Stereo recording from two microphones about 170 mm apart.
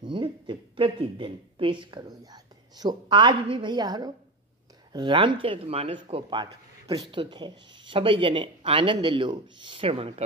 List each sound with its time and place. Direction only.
0.0 s speech: 30° right (ahead or behind)